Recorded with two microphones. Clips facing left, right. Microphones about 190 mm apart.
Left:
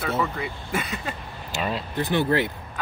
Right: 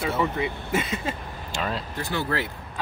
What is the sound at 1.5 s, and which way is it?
Speech, 5° left (ahead or behind).